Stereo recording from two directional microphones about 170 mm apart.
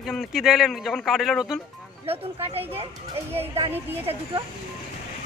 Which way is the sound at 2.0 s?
35° right (ahead or behind).